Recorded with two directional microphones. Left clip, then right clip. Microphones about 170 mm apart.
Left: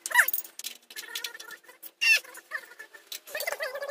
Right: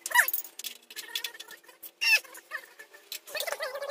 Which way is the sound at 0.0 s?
5° left (ahead or behind).